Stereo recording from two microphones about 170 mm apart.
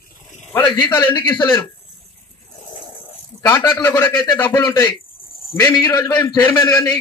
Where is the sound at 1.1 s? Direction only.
10° left (ahead or behind).